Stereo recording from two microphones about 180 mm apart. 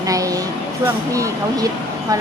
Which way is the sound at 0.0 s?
20° right (ahead or behind).